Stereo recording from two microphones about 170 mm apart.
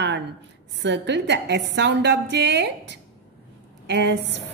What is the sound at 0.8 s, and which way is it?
A woman's voice, 90° right.